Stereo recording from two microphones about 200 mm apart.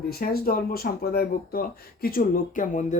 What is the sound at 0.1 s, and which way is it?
Speech, 45° left (ahead or behind).